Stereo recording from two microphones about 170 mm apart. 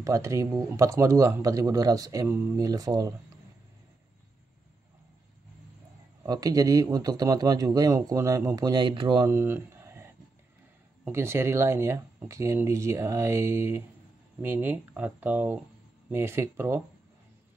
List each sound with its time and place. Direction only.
0.0 s speech: 15° right (ahead or behind)
6.2 s speech: 20° right (ahead or behind)
9.3 s a sound: 15° right (ahead or behind)
11.1 s speech: 15° right (ahead or behind)